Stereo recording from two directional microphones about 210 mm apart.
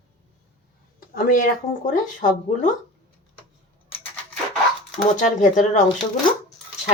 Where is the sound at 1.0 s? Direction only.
40° left (ahead or behind).